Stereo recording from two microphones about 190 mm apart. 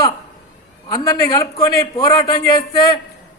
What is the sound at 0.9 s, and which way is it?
A man's voice, 20° left (ahead or behind).